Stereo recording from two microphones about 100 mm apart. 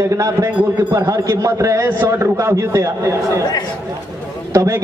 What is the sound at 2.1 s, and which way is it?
A man's voice, 30° right (ahead or behind).